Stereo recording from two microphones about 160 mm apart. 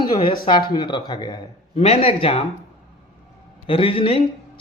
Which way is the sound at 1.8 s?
40° left (ahead or behind).